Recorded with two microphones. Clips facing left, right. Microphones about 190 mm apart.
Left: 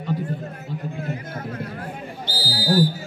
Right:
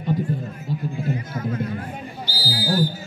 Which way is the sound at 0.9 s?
65° left (ahead or behind).